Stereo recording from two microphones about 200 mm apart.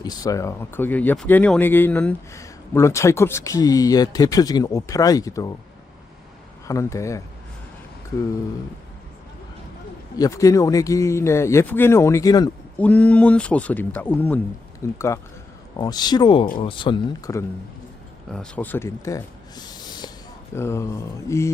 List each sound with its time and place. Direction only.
0.0 s speech: 20° left (ahead or behind)
6.7 s speech: 15° left (ahead or behind)
10.2 s speech: 15° left (ahead or behind)
18.3 s speech: 5° left (ahead or behind)